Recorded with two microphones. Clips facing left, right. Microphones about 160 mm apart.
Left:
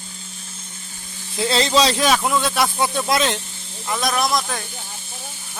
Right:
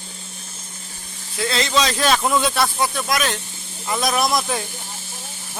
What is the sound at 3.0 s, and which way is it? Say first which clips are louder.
Speech: left 3 dB; 25° left (ahead or behind).